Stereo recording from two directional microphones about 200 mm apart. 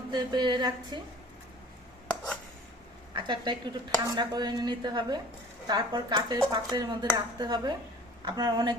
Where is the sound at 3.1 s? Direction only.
25° right (ahead or behind).